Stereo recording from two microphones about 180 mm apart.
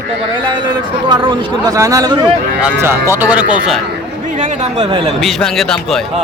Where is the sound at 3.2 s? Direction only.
10° right (ahead or behind).